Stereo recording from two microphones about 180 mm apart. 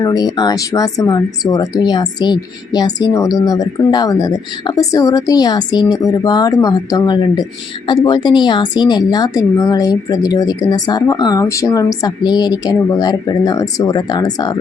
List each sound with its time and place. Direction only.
0.0 s speech: 20° left (ahead or behind)